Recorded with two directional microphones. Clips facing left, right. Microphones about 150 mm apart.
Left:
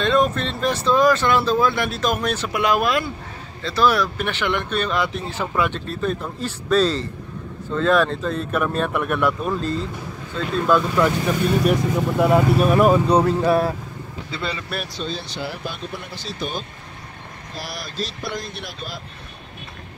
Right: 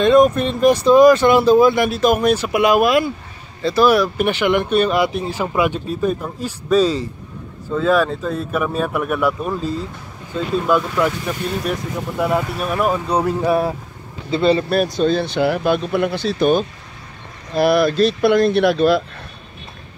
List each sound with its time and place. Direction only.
0.0 s speech: 15° right (ahead or behind)
12.2 s speech: centre (ahead or behind); by 14.6 s 25° right (ahead or behind)
14.6 s speech: 40° right (ahead or behind); by 19.0 s 70° right (ahead or behind)